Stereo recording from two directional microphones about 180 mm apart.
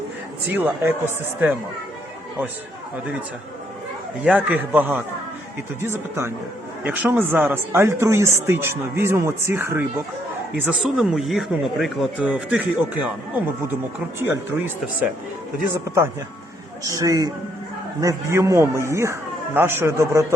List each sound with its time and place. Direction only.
0.5 s speech: 10° right (ahead or behind)
4.2 s speech: 5° right (ahead or behind)
10.7 s speech: centre (ahead or behind)
14.2 s speech: 10° right (ahead or behind)
16.8 s a man's voice: 20° right (ahead or behind)